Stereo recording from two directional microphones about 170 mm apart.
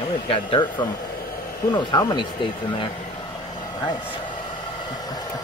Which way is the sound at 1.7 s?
20° left (ahead or behind).